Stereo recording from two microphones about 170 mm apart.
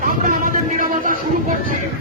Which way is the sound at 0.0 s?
50° right (ahead or behind).